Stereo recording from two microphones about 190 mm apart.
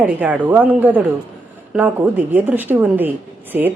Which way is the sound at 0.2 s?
10° right (ahead or behind).